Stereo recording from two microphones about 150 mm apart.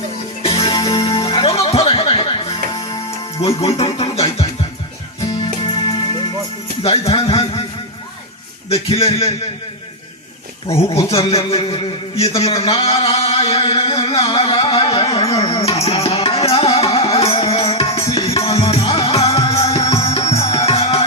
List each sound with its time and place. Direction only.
0.4 s music: 30° left (ahead or behind)
1.0 s music: 40° left (ahead or behind)
2.7 s music: 25° left (ahead or behind)
3.4 s music: 40° left (ahead or behind)
5.2 s music: 25° left (ahead or behind)
6.8 s speech: 40° left (ahead or behind)
8.7 s a man's voice: 40° left (ahead or behind)
11.1 s a man's voice: 40° left (ahead or behind)
15.4 s music: 25° left (ahead or behind)
15.6 s music: 40° left (ahead or behind)